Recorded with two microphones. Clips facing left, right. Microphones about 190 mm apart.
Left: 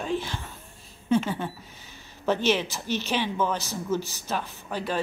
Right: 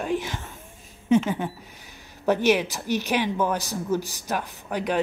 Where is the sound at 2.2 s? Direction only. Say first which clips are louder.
Right 3 dB; 15° right (ahead or behind).